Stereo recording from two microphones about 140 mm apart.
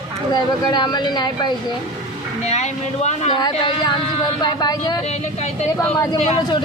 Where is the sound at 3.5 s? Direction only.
40° left (ahead or behind).